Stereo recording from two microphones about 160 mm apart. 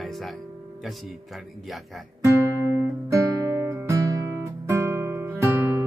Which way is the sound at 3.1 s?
15° right (ahead or behind).